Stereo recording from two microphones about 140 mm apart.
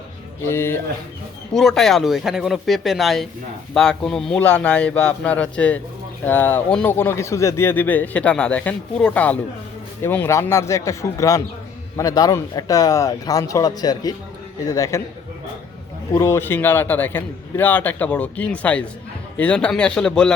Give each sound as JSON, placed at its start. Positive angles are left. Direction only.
{"t": 0.4, "sound": "speech", "side_deg": 15}
{"t": 1.5, "sound": "a man's voice", "side_deg": 0}
{"t": 16.1, "sound": "speech", "side_deg": 20}